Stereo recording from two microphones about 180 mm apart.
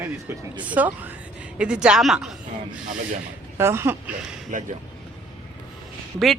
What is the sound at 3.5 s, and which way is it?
Speech, 15° right (ahead or behind).